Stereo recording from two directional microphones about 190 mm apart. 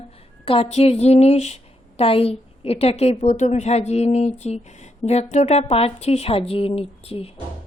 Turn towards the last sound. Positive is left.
turn(degrees=30)  # may be behind; listen again after turning